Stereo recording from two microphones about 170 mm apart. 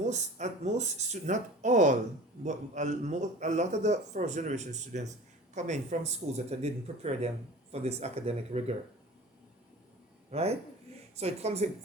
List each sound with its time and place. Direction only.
0.0 s a man's voice: 45° right (ahead or behind)
10.3 s speech: 40° right (ahead or behind)